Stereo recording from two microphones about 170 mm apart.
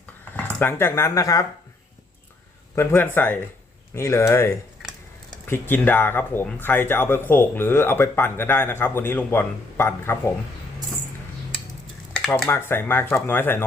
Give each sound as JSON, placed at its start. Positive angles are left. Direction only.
{"t": 0.3, "sound": "speech", "side_deg": 10}
{"t": 2.7, "sound": "speech", "side_deg": 10}
{"t": 12.1, "sound": "speech", "side_deg": 10}